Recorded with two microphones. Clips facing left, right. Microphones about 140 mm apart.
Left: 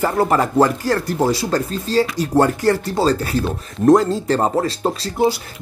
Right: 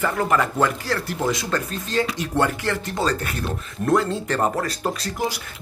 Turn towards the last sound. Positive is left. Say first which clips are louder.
# left 7 dB
turn(degrees=30)  # may be behind; listen again after turning